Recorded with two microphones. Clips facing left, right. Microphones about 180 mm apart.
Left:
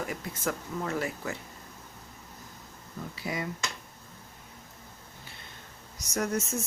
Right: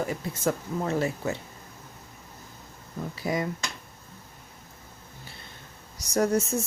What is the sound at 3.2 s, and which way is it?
Speech, 40° right (ahead or behind).